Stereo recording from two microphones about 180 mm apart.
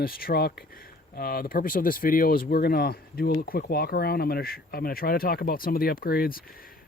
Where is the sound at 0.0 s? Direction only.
55° left (ahead or behind).